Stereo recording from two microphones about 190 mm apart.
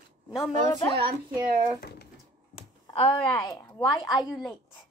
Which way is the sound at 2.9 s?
30° left (ahead or behind).